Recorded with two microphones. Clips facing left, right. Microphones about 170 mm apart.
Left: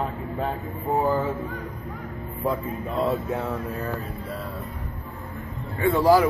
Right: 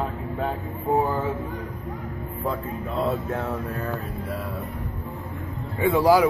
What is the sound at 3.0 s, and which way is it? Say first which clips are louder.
Speech: left 1 dB; 10° left (ahead or behind).